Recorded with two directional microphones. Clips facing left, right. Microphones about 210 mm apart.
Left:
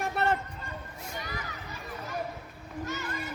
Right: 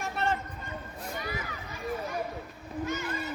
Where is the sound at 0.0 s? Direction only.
65° left (ahead or behind).